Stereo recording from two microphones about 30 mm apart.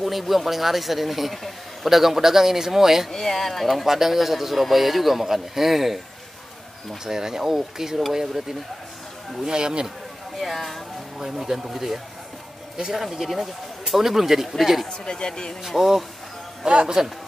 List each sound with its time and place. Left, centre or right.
0.0 s a man's voice: centre
3.1 s speech: centre
3.6 s a man's voice: centre
7.1 s speech: centre
10.3 s speech: centre
11.1 s speech: centre
14.9 s speech: left
15.6 s speech: centre
16.6 s speech: right